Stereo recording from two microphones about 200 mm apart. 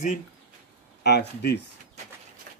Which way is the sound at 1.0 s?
55° left (ahead or behind).